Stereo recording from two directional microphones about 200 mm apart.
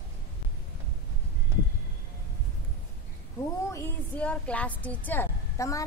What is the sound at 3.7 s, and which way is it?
A woman's voice, 10° left (ahead or behind).